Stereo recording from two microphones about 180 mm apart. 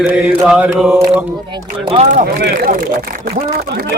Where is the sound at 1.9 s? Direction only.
35° right (ahead or behind).